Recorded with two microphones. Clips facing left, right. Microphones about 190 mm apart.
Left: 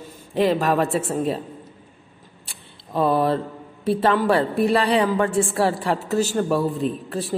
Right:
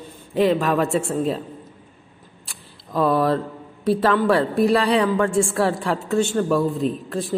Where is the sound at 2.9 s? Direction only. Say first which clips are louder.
Right 1 dB; 30° left (ahead or behind).